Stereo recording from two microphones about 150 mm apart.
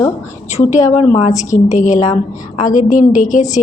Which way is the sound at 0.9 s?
45° left (ahead or behind).